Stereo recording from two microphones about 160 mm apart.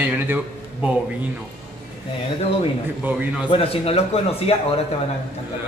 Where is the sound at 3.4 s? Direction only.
35° left (ahead or behind).